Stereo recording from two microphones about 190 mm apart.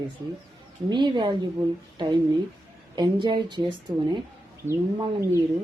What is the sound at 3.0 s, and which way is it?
Speech, 25° right (ahead or behind).